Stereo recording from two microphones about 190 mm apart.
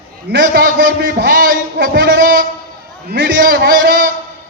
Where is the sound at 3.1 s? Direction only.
50° right (ahead or behind).